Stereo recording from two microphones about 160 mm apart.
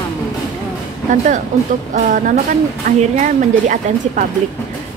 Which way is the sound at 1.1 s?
50° right (ahead or behind).